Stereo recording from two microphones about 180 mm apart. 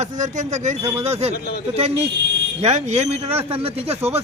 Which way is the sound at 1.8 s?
35° right (ahead or behind).